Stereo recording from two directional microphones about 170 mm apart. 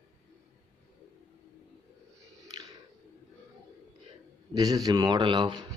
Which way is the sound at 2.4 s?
20° right (ahead or behind).